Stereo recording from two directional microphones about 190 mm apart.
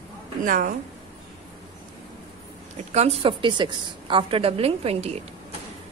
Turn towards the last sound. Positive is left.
turn(degrees=-30)  # may be behind; listen again after turning